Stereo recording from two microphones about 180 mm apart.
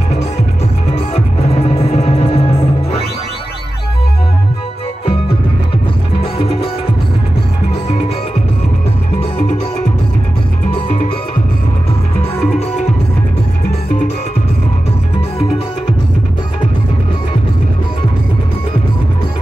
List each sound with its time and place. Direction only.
0.9 s music: 35° left (ahead or behind)
6.3 s music: 30° left (ahead or behind)